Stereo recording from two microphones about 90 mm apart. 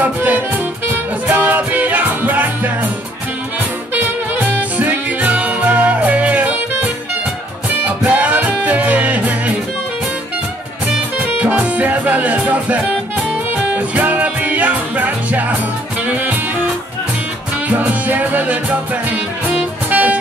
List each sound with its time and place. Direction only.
0.0 s music: 20° right (ahead or behind)
3.9 s music: 20° right (ahead or behind)
8.0 s music: 15° right (ahead or behind)
11.3 s music: 15° right (ahead or behind)
17.6 s music: 15° right (ahead or behind)